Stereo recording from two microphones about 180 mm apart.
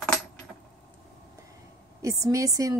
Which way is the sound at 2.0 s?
15° right (ahead or behind).